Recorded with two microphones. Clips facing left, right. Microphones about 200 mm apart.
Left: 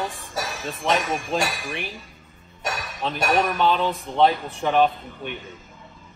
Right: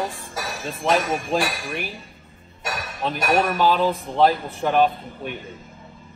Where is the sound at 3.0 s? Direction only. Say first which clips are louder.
Right 1 dB; centre (ahead or behind).